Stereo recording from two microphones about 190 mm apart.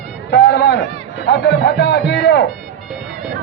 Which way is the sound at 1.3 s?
60° left (ahead or behind).